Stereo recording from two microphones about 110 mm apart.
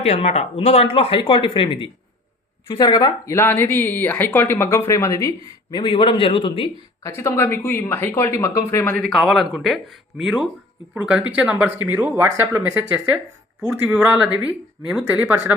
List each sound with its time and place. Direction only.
0.0 s speech: 70° left (ahead or behind); by 1.9 s 50° left (ahead or behind)
2.6 s speech: 40° left (ahead or behind)
3.3 s speech: 20° left (ahead or behind)
5.7 s a man's voice: 50° left (ahead or behind)
7.2 s speech: 20° left (ahead or behind)
9.0 s speech: centre (ahead or behind); by 12.8 s 20° right (ahead or behind)
13.6 s speech: 5° right (ahead or behind)